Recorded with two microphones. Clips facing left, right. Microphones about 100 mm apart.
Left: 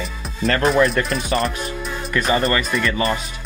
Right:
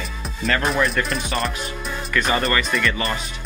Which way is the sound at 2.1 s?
35° left (ahead or behind).